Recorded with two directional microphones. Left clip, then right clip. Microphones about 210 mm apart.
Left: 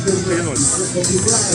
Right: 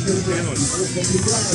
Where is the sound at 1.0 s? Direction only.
35° left (ahead or behind).